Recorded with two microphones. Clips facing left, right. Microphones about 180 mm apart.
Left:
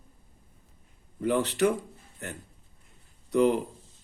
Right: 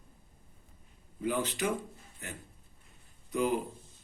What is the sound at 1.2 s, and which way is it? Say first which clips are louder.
Speech: left 7 dB; 70° left (ahead or behind).